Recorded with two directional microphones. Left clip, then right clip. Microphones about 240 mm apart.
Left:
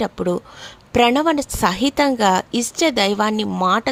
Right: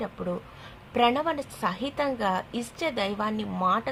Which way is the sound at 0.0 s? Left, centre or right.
Left.